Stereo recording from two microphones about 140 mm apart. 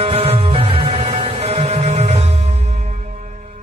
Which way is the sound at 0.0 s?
45° right (ahead or behind).